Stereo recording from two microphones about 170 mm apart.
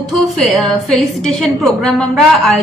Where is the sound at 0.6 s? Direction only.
Centre (ahead or behind).